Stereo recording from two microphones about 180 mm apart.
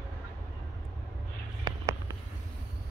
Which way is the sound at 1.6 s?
15° right (ahead or behind).